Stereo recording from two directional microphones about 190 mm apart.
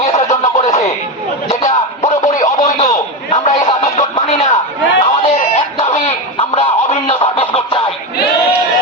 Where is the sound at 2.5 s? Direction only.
35° left (ahead or behind).